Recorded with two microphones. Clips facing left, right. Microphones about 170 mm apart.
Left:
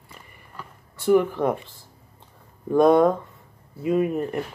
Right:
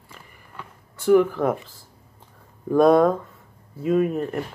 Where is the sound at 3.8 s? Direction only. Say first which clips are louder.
Right 1 dB; 10° left (ahead or behind).